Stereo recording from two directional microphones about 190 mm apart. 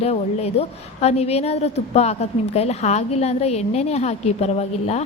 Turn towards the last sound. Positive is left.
turn(degrees=35)  # may be behind; listen again after turning